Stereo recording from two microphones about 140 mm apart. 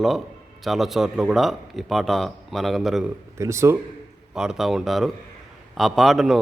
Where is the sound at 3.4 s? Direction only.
20° right (ahead or behind).